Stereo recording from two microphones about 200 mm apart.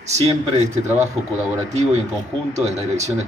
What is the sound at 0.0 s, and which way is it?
Speech, 35° right (ahead or behind).